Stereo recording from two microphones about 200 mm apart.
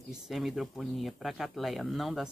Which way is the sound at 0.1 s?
Centre (ahead or behind).